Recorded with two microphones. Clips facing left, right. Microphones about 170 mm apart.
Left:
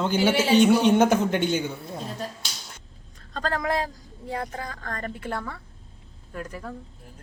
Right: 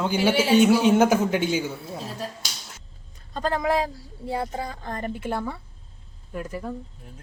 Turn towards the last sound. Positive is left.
turn(degrees=-15)  # may be behind; listen again after turning